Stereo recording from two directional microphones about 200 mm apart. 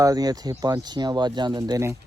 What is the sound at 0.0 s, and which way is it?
Speech, 20° right (ahead or behind).